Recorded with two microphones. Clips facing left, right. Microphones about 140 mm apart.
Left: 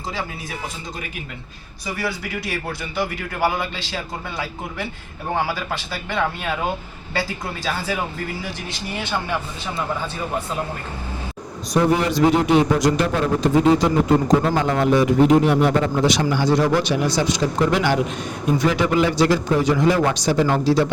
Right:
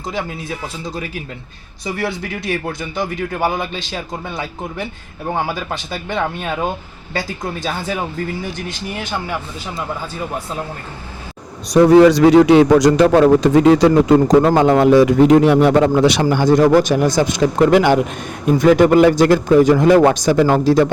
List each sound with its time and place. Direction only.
2.9 s speech: 20° right (ahead or behind)
5.5 s speech: 20° right (ahead or behind)
11.7 s a man's voice: 90° right; by 16.2 s 75° right (ahead or behind)
16.3 s a man's voice: 50° right (ahead or behind)